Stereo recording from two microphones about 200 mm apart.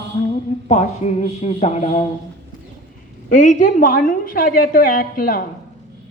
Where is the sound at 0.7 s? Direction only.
35° left (ahead or behind).